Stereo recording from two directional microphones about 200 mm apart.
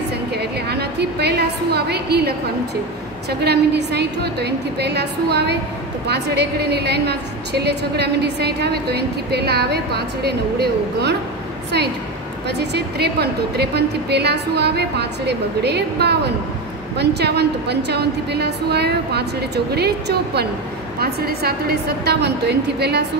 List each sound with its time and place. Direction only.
0.3 s a woman's voice: 55° right (ahead or behind)
12.4 s a woman's voice: 55° right (ahead or behind)